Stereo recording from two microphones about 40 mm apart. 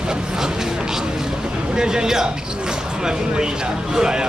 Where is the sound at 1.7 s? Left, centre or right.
Centre.